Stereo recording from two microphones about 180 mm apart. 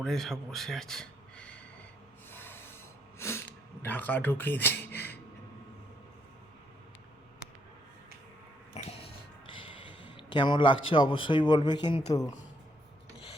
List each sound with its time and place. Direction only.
0.0 s speech: centre (ahead or behind)
2.3 s sanding: 10° left (ahead or behind)
3.2 s a sound: 15° left (ahead or behind)
3.8 s speech: 10° left (ahead or behind)
8.7 s a sound: 35° left (ahead or behind)
10.8 s speech: 30° left (ahead or behind)